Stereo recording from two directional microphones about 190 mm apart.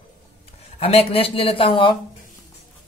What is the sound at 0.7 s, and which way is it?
Speech, 30° left (ahead or behind).